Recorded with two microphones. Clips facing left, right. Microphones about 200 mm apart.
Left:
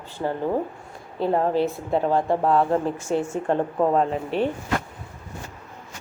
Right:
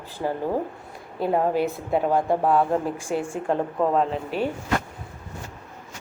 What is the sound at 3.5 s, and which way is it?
Speech, centre (ahead or behind).